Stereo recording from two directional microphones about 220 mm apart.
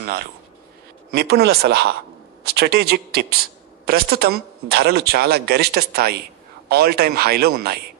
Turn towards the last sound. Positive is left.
turn(degrees=-45)  # may be behind; listen again after turning